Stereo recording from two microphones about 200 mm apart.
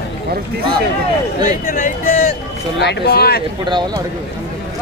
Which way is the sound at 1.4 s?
40° left (ahead or behind).